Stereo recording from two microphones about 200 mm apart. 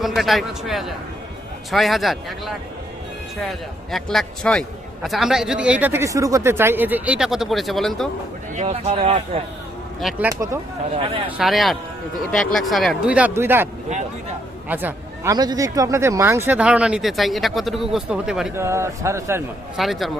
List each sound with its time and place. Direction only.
0.0 s speech: centre (ahead or behind)
3.9 s speech: centre (ahead or behind)
8.5 s speech: 35° right (ahead or behind)
10.0 s speech: centre (ahead or behind)
10.2 s speech: 15° right (ahead or behind)
10.9 s speech: 25° right (ahead or behind)
11.3 s speech: centre (ahead or behind)
14.7 s speech: 10° right (ahead or behind)
18.5 s speech: 15° right (ahead or behind)
19.7 s speech: centre (ahead or behind)